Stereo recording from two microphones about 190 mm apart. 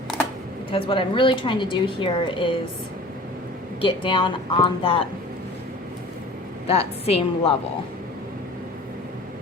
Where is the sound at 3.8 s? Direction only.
25° left (ahead or behind).